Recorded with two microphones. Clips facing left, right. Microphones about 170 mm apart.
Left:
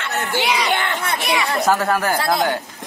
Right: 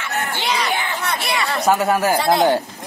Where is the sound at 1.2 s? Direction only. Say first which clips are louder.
Left 4 dB; 15° left (ahead or behind).